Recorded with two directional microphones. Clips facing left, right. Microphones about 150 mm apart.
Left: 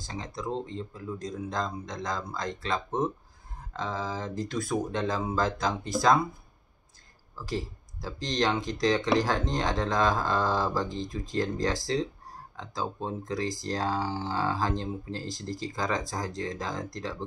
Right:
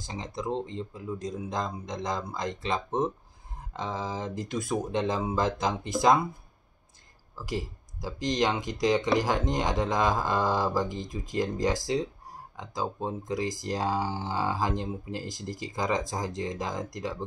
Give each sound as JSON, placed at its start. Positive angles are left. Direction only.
{"t": 0.0, "sound": "speech", "side_deg": -15}
{"t": 7.3, "sound": "speech", "side_deg": -15}